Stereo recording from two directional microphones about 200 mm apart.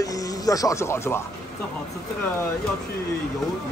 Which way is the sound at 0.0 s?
15° left (ahead or behind).